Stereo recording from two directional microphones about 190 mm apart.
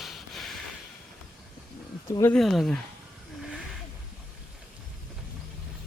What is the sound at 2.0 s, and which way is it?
Speech, 15° left (ahead or behind).